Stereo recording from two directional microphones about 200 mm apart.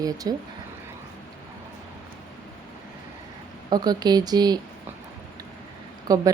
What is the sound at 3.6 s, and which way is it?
Speech, 20° right (ahead or behind).